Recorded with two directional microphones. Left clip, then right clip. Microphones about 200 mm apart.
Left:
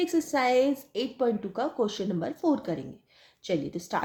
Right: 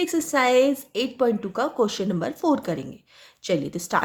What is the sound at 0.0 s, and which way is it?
Speech, 20° right (ahead or behind).